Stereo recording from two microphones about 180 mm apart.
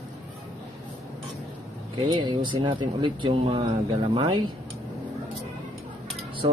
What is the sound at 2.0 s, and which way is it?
Speech, 25° right (ahead or behind).